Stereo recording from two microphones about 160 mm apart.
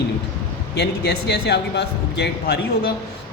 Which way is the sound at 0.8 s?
90° left.